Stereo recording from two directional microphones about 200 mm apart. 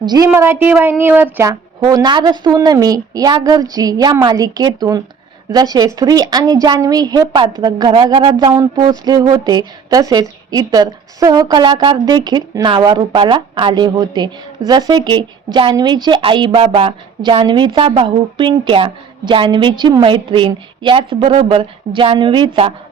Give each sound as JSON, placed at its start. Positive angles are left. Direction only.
{"t": 0.0, "sound": "a woman's voice", "side_deg": -20}